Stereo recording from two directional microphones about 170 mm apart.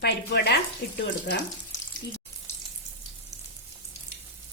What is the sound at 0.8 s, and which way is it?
Speech, 65° left (ahead or behind).